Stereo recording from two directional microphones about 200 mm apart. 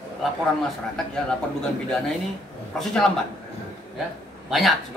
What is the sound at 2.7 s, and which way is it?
Speech, 5° left (ahead or behind).